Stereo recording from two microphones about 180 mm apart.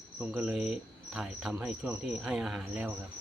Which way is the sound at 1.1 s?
Centre (ahead or behind).